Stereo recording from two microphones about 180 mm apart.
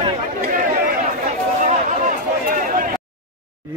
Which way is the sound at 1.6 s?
45° right (ahead or behind).